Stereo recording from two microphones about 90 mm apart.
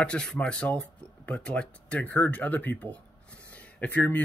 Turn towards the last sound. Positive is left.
turn(degrees=20)  # may be behind; listen again after turning